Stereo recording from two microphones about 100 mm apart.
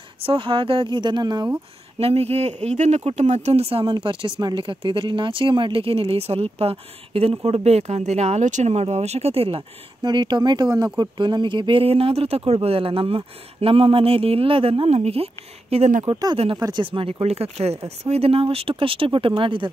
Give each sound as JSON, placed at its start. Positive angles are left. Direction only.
{"t": 0.2, "sound": "speech", "side_deg": -65}
{"t": 2.0, "sound": "speech", "side_deg": -85}
{"t": 10.0, "sound": "speech", "side_deg": -45}
{"t": 16.7, "sound": "speech", "side_deg": -60}